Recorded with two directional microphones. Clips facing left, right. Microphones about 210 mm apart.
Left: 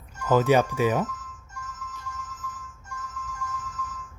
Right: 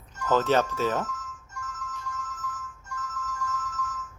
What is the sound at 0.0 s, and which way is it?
Speech, 10° left (ahead or behind).